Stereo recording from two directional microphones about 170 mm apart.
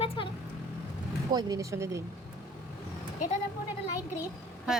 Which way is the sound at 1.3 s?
20° right (ahead or behind).